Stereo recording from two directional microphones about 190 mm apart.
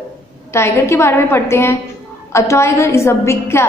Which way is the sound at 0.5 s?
15° left (ahead or behind).